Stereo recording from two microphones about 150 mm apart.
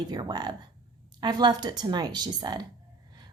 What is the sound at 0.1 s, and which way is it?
A woman's voice, 25° right (ahead or behind).